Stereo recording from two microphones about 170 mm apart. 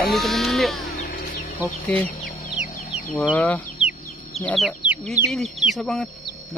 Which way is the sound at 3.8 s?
35° left (ahead or behind).